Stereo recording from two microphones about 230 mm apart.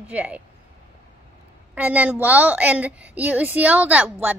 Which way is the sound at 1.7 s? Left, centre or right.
Centre.